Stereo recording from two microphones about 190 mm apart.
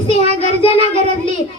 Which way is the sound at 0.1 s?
35° right (ahead or behind).